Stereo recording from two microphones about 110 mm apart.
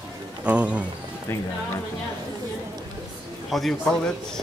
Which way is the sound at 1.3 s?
20° left (ahead or behind).